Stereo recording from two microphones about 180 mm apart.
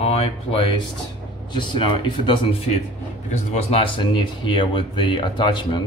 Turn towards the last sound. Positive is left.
turn(degrees=25)  # may be behind; listen again after turning